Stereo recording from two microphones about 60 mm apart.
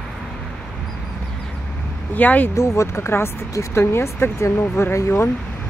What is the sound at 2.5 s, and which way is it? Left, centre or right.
Speech, left.